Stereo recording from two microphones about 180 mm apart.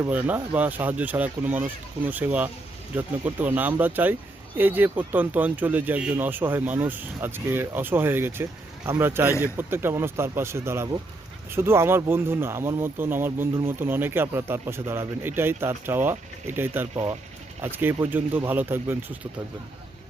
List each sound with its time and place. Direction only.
0.0 s speech: 10° right (ahead or behind)
16.9 s speech: 30° right (ahead or behind)
17.6 s speech: 10° right (ahead or behind)